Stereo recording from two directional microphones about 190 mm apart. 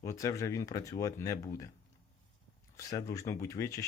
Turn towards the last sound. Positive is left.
turn(degrees=15)  # may be behind; listen again after turning